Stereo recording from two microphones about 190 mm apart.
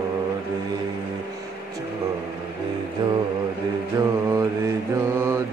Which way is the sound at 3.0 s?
20° right (ahead or behind).